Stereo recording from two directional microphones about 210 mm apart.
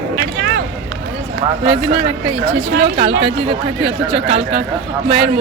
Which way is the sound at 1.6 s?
25° right (ahead or behind).